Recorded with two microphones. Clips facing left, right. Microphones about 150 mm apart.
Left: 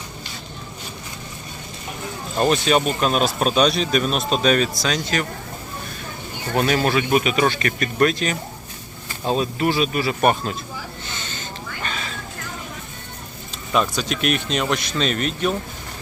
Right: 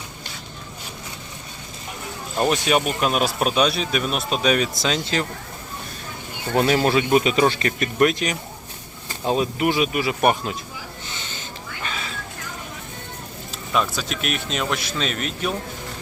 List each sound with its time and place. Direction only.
2.4 s speech: 10° right (ahead or behind)
6.5 s speech: 20° right (ahead or behind)
11.8 s whispering: 5° right (ahead or behind)
13.7 s speech: centre (ahead or behind)